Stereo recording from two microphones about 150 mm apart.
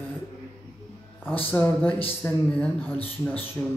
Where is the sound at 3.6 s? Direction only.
20° left (ahead or behind).